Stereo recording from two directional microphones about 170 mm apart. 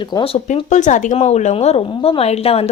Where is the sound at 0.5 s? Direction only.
45° left (ahead or behind).